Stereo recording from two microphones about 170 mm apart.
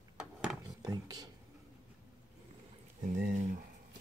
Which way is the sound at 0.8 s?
25° right (ahead or behind).